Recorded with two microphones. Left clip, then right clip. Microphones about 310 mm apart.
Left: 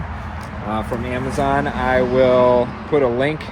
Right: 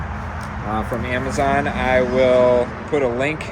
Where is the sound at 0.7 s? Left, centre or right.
Centre.